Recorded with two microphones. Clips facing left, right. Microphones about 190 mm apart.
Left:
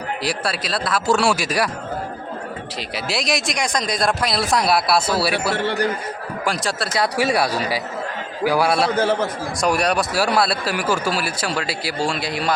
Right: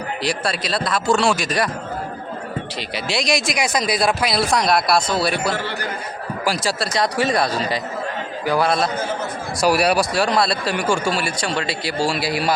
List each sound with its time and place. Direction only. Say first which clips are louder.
0.2 s speech: right 3 dB; 5° left (ahead or behind)
2.9 s speech: right 2 dB; centre (ahead or behind)
6.4 s speech: right 2 dB; centre (ahead or behind)
9.6 s speech: right 3 dB; 5° right (ahead or behind)
10.1 s speech: even; 5° left (ahead or behind)